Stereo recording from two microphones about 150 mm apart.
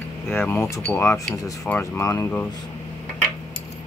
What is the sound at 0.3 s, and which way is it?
Speech, 15° left (ahead or behind).